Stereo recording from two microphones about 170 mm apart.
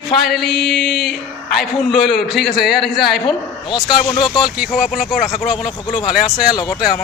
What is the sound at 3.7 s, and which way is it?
Speech, 30° left (ahead or behind).